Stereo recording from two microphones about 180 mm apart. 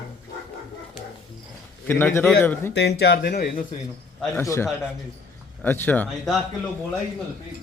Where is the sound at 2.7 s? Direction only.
70° left (ahead or behind).